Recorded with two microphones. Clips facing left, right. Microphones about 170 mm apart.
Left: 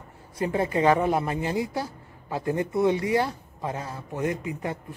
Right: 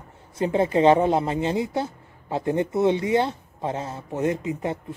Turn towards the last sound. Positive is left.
turn(degrees=-25)  # may be behind; listen again after turning